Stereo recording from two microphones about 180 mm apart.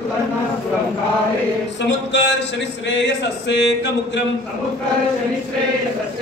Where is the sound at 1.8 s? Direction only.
80° left.